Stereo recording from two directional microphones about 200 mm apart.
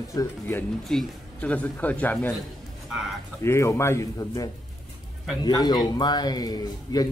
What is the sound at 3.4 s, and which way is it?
A man's voice, 15° left (ahead or behind).